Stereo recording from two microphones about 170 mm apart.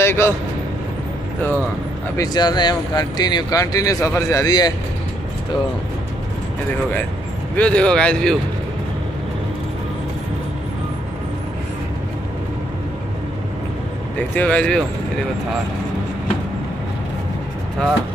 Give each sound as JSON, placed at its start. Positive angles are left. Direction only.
{"t": 0.0, "sound": "speech", "side_deg": 15}
{"t": 2.1, "sound": "speech", "side_deg": 25}
{"t": 7.5, "sound": "speech", "side_deg": 5}
{"t": 14.3, "sound": "speech", "side_deg": 10}